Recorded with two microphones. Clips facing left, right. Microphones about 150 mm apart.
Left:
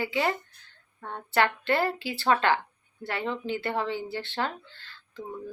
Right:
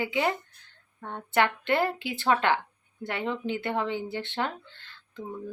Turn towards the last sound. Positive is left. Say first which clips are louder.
# even
turn(degrees=-20)  # may be behind; listen again after turning